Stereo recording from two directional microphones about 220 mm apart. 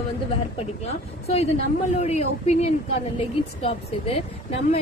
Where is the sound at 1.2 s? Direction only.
30° left (ahead or behind).